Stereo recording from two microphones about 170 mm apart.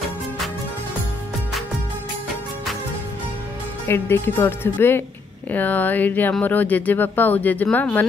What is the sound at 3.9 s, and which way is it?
Speech, 15° left (ahead or behind).